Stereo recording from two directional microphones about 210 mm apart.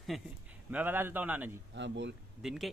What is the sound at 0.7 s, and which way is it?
Speech, 10° right (ahead or behind).